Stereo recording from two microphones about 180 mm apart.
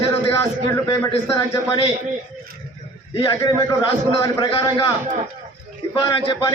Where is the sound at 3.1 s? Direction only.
25° left (ahead or behind).